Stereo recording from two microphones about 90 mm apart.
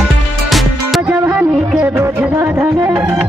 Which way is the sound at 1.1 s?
20° right (ahead or behind).